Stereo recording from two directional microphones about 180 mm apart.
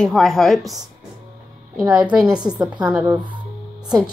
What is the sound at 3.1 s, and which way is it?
Speech, 25° right (ahead or behind).